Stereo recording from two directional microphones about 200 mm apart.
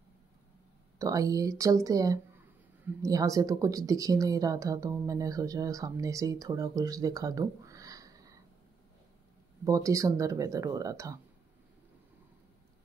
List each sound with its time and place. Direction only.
0.9 s speech: 15° right (ahead or behind)
9.7 s speech: 15° right (ahead or behind)